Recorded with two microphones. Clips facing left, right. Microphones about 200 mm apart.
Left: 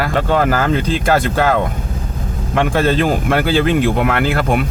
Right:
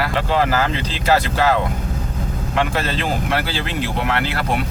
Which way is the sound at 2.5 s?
50° left (ahead or behind).